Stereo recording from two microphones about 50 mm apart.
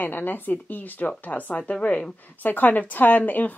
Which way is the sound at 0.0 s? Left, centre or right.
Left.